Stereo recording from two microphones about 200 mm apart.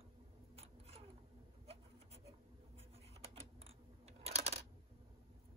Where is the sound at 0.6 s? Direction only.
30° right (ahead or behind).